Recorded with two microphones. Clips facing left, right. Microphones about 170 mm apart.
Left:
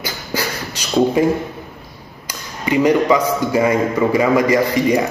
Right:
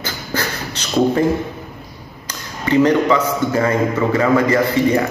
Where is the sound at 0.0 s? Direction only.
10° left (ahead or behind).